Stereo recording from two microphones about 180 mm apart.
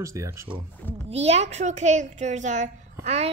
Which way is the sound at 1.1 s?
35° right (ahead or behind).